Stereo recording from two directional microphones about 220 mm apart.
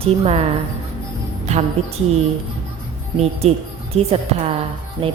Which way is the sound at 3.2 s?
30° right (ahead or behind).